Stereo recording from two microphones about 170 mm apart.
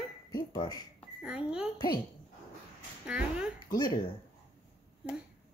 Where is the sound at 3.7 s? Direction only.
25° left (ahead or behind).